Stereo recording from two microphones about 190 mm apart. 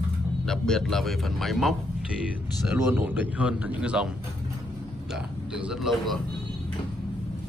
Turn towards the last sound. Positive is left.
turn(degrees=0)  # may be behind; listen again after turning